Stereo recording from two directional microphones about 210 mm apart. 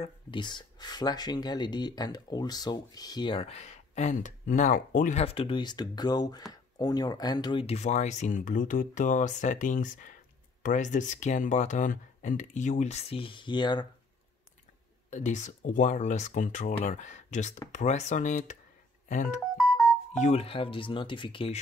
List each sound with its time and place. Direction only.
0.0 s speech: 20° left (ahead or behind)
15.0 s speech: 35° left (ahead or behind)
19.5 s music: 5° right (ahead or behind)
20.2 s speech: 30° left (ahead or behind)